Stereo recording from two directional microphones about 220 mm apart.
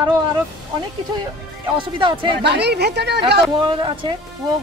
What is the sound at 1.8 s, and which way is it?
Speech, 20° right (ahead or behind).